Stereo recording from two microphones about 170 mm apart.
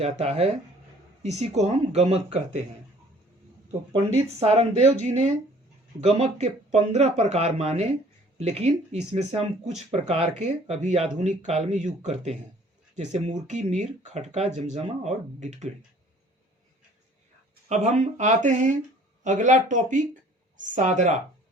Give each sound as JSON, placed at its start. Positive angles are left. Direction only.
{"t": 0.0, "sound": "speech", "side_deg": -40}
{"t": 3.7, "sound": "speech", "side_deg": -35}
{"t": 17.7, "sound": "speech", "side_deg": -45}